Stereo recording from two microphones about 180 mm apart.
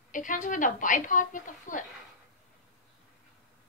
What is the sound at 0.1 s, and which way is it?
A woman's voice, 45° left (ahead or behind).